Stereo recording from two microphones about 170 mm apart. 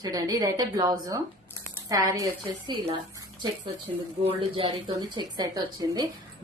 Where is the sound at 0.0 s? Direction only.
20° right (ahead or behind).